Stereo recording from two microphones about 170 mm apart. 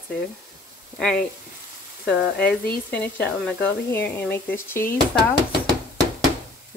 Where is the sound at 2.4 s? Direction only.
65° left (ahead or behind).